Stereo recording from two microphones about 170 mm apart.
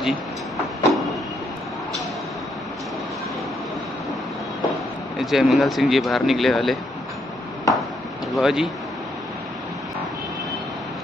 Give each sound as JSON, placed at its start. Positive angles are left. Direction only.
{"t": 5.2, "sound": "speech", "side_deg": 0}
{"t": 7.7, "sound": "a sound", "side_deg": 20}
{"t": 8.4, "sound": "speech", "side_deg": -5}